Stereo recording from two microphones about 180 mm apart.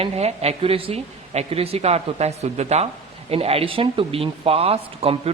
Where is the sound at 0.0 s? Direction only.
35° right (ahead or behind).